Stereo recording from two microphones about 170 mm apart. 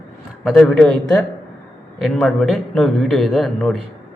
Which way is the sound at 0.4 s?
5° left (ahead or behind).